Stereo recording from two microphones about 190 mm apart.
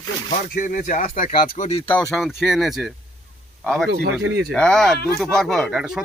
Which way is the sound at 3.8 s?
60° right (ahead or behind).